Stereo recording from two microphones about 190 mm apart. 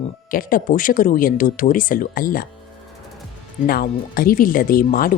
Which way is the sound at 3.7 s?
50° left (ahead or behind).